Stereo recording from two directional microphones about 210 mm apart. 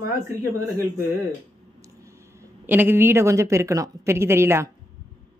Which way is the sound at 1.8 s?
15° right (ahead or behind).